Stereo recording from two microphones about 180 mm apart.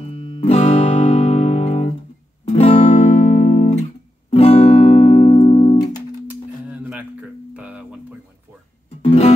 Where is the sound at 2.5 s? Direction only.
35° left (ahead or behind).